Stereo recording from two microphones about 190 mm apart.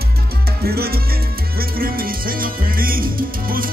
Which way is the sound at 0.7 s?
55° right (ahead or behind).